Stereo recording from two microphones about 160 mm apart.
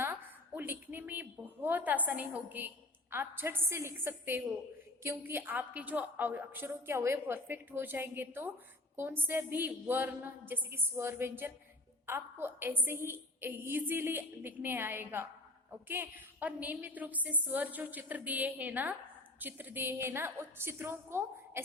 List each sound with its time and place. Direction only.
0.0 s a woman's voice: 15° right (ahead or behind)